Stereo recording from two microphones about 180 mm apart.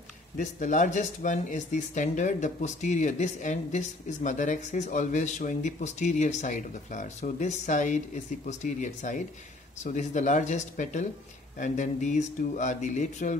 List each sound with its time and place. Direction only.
0.4 s speech: 45° left (ahead or behind)